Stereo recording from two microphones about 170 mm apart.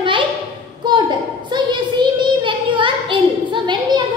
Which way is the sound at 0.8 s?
25° right (ahead or behind).